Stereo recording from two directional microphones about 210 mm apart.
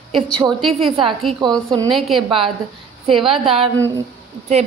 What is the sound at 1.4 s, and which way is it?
Speech, 20° right (ahead or behind).